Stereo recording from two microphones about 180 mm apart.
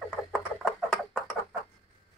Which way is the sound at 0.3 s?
Centre (ahead or behind).